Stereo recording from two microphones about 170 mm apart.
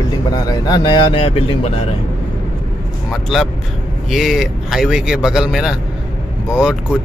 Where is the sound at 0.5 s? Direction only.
25° left (ahead or behind).